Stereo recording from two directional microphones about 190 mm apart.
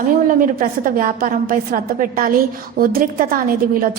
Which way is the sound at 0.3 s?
45° right (ahead or behind).